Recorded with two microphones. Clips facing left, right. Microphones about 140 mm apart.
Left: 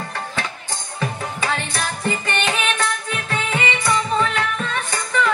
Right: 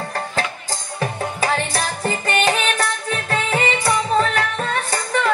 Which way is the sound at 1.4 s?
35° right (ahead or behind).